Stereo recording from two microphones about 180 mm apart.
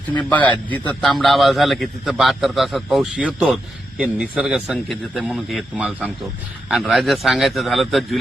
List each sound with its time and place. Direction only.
0.3 s a man's voice: 10° left (ahead or behind)